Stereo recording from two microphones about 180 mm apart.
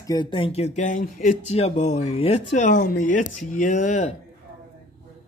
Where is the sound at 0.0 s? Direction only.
25° left (ahead or behind); by 4.1 s 40° left (ahead or behind).